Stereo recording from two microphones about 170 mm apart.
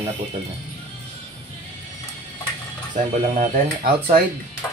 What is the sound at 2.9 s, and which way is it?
Speech, 50° right (ahead or behind).